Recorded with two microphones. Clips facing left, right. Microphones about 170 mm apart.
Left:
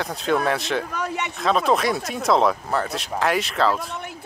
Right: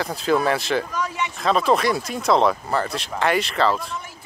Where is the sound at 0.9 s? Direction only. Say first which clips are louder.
Right 1 dB; 60° left (ahead or behind).